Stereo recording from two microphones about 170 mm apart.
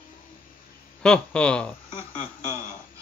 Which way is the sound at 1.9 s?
30° left (ahead or behind).